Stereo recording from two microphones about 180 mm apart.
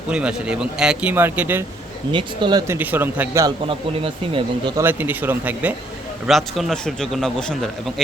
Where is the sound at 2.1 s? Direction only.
25° right (ahead or behind).